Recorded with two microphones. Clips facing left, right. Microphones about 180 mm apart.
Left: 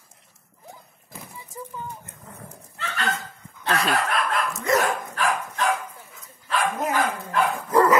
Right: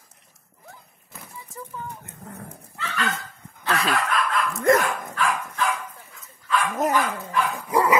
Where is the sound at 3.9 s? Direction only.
40° left (ahead or behind).